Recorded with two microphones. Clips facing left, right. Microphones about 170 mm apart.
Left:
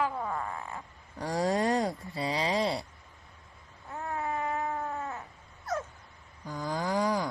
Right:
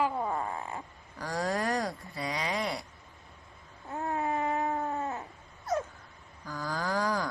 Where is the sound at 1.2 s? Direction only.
25° left (ahead or behind).